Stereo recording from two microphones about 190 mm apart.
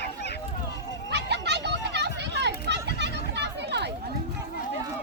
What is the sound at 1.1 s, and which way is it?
Children playing, 65° right (ahead or behind).